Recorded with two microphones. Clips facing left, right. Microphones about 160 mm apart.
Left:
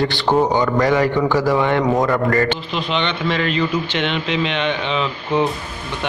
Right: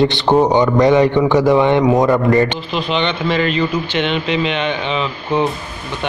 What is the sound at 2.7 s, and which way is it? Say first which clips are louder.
Speech: right 3 dB; centre (ahead or behind).